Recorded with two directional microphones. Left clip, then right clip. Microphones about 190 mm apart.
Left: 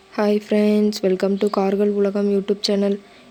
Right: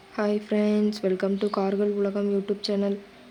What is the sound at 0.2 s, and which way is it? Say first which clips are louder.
Speech: left 7 dB; 35° left (ahead or behind).